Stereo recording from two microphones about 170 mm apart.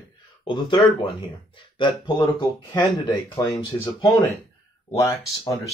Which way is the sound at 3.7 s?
15° left (ahead or behind).